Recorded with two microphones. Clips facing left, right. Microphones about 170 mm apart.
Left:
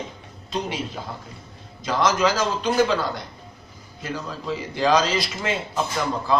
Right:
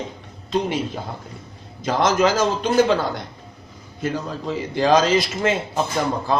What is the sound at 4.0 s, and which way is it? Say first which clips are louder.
A man's voice: right 5 dB; 45° right (ahead or behind).